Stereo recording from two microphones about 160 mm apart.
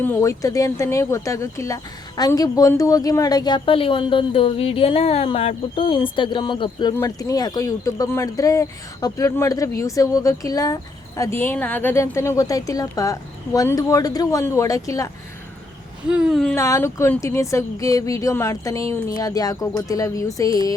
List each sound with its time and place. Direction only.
0.0 s speech: 15° left (ahead or behind)
6.9 s speech: 20° left (ahead or behind)
16.0 s speech: 5° right (ahead or behind)
16.6 s speech: 20° left (ahead or behind)